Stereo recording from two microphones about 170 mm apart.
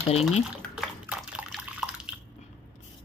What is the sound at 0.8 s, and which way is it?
Drip, 5° right (ahead or behind).